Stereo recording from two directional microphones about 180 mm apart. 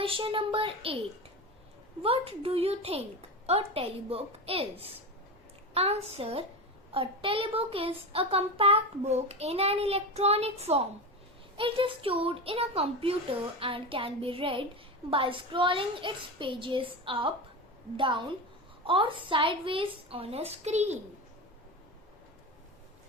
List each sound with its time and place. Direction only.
0.0 s a child's voice: 30° right (ahead or behind)
2.0 s a child's voice: 30° right (ahead or behind)